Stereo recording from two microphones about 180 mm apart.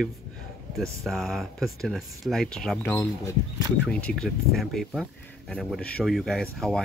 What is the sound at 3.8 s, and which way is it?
Speech, 5° left (ahead or behind).